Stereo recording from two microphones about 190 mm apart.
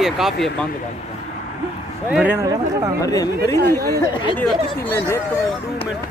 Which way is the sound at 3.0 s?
20° left (ahead or behind).